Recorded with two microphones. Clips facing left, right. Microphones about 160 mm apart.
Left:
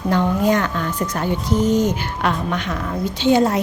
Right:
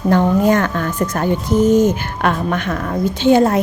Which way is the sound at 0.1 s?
50° right (ahead or behind).